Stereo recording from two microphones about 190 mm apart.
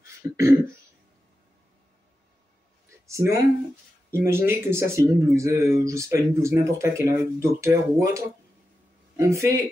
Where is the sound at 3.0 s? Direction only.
15° right (ahead or behind).